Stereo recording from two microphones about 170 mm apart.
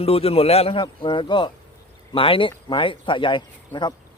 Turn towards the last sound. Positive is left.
turn(degrees=25)  # may be behind; listen again after turning